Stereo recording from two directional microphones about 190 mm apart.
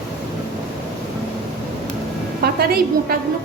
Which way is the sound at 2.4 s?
55° right (ahead or behind).